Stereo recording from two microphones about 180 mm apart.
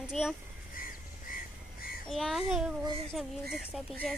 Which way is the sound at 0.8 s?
50° left (ahead or behind).